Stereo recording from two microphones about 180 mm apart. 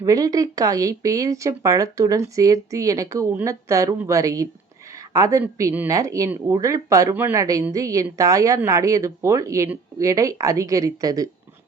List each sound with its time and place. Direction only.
0.0 s speech: 20° right (ahead or behind)